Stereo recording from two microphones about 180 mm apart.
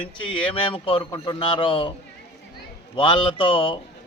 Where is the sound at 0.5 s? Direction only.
30° left (ahead or behind).